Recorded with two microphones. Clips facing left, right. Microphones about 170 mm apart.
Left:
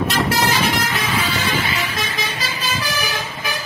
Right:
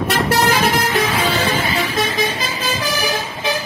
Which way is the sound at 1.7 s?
35° right (ahead or behind).